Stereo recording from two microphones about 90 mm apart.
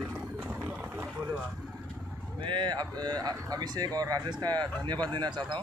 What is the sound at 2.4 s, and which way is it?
Speech, 60° right (ahead or behind).